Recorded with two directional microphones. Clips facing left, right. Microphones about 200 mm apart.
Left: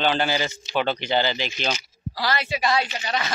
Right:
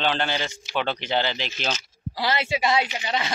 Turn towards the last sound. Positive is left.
turn(degrees=-20)  # may be behind; listen again after turning